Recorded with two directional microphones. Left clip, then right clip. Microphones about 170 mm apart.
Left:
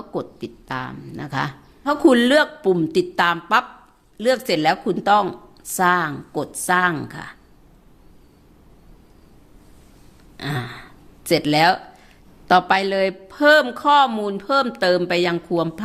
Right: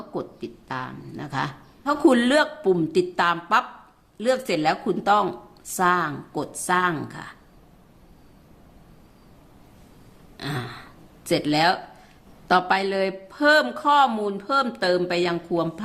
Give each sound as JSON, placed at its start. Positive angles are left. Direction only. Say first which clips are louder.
{"t": 0.1, "sound": "speech", "louder": "left 4 dB", "side_deg": 30}
{"t": 10.3, "sound": "speech", "louder": "left 3 dB", "side_deg": 35}